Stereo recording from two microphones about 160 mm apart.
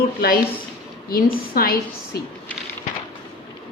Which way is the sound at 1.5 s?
70° left (ahead or behind).